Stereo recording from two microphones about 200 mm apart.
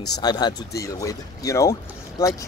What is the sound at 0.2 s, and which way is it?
Speech, 20° left (ahead or behind).